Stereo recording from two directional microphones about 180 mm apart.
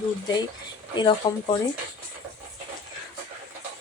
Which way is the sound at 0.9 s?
25° left (ahead or behind).